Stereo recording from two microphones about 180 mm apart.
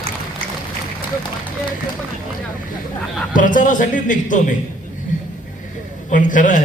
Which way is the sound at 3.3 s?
45° left (ahead or behind).